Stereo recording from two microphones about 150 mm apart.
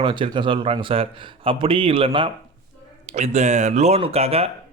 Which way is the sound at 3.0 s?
50° right (ahead or behind).